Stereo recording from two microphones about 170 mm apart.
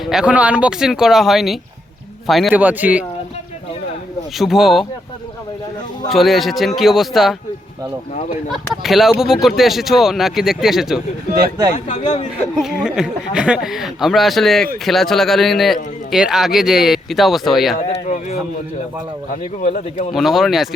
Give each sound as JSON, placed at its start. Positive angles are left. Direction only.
{"t": 0.0, "sound": "a man's voice", "side_deg": 0}
{"t": 4.4, "sound": "a man's voice", "side_deg": 0}
{"t": 6.1, "sound": "a man's voice", "side_deg": 0}
{"t": 8.4, "sound": "a man's voice", "side_deg": 0}
{"t": 11.9, "sound": "a man's voice", "side_deg": 40}
{"t": 12.5, "sound": "a man's voice", "side_deg": -5}
{"t": 17.8, "sound": "speech", "side_deg": 40}
{"t": 20.1, "sound": "a man's voice", "side_deg": 0}